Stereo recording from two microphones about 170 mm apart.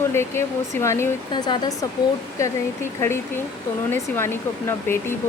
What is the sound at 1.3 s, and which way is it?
Speech, 25° left (ahead or behind).